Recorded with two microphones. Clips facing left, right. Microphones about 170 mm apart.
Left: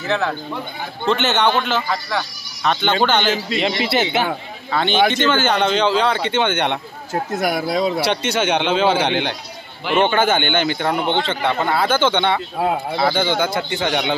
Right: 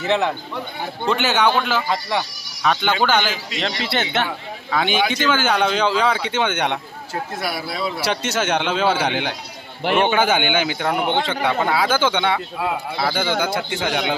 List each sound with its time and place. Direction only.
0.0 s speech: 20° right (ahead or behind)
1.0 s speech: 10° right (ahead or behind)
1.9 s speech: 20° right (ahead or behind)
2.6 s speech: 5° right (ahead or behind)
3.8 s a man's voice: 5° left (ahead or behind)
7.3 s speech: 45° left (ahead or behind)
8.1 s a man's voice: 5° right (ahead or behind)